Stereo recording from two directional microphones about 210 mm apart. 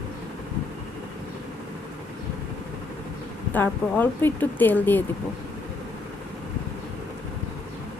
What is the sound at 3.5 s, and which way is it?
Speech, 10° left (ahead or behind).